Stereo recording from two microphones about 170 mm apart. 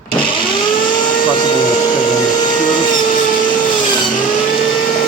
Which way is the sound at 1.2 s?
25° left (ahead or behind).